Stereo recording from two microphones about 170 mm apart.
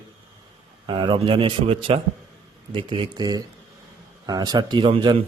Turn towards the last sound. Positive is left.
turn(degrees=-30)  # may be behind; listen again after turning